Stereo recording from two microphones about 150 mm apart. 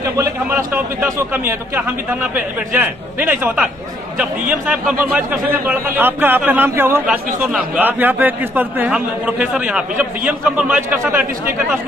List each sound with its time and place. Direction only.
0.0 s a man's voice: 15° right (ahead or behind)